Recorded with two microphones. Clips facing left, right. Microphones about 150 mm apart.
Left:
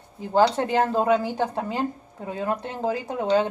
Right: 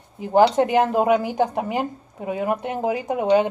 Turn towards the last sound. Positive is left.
turn(degrees=-15)  # may be behind; listen again after turning